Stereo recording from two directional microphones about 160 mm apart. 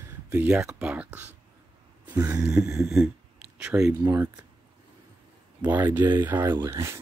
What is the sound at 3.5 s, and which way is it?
Speech, 5° right (ahead or behind).